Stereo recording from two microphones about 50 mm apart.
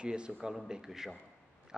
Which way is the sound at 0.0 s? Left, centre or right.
Centre.